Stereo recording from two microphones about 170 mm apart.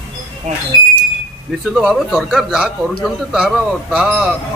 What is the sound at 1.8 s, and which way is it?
A man's voice, centre (ahead or behind).